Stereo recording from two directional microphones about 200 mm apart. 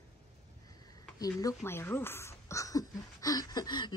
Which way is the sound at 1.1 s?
20° left (ahead or behind).